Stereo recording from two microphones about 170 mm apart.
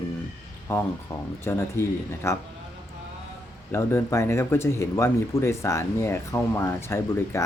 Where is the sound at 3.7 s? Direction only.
15° left (ahead or behind).